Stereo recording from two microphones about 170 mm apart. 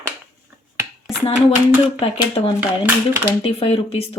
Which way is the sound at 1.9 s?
35° left (ahead or behind).